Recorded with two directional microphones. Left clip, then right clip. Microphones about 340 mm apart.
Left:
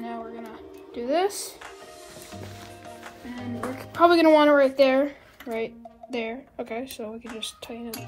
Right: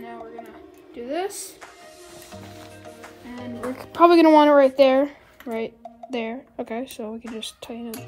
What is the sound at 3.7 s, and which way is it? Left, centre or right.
Speech, right.